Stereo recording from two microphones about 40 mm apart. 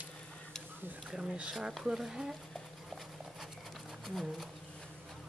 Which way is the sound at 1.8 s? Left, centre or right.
Centre.